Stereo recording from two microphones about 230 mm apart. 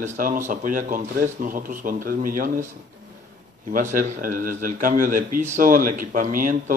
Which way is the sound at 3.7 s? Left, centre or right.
Right.